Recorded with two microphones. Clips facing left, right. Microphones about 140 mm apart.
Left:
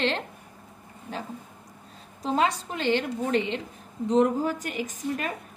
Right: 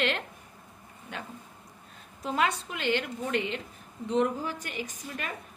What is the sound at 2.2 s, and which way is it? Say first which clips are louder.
A woman's voice: left 4 dB; 35° left (ahead or behind).